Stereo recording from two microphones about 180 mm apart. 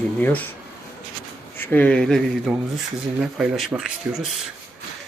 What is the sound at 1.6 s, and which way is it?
Speech, 10° left (ahead or behind).